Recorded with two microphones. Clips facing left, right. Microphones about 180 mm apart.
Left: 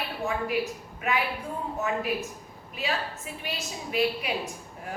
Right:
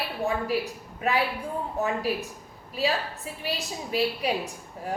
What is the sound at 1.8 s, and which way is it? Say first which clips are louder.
A woman's voice: right 2 dB; 35° right (ahead or behind).